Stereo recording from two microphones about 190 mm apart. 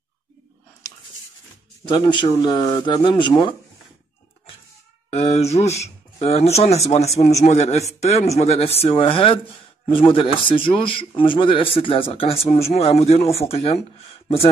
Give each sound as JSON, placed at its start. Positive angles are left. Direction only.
{"t": 1.9, "sound": "speech", "side_deg": 25}
{"t": 5.1, "sound": "speech", "side_deg": 35}